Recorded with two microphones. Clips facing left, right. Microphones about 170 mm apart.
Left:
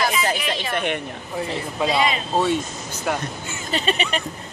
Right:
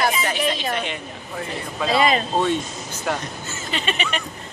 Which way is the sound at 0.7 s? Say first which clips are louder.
Left 3 dB; 55° left (ahead or behind).